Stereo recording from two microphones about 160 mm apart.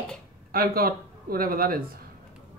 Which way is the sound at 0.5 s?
70° right (ahead or behind).